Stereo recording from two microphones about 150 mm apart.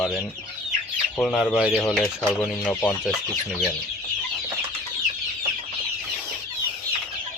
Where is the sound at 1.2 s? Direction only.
5° left (ahead or behind).